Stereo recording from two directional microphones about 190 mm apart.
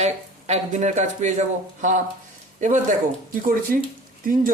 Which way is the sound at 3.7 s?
50° right (ahead or behind).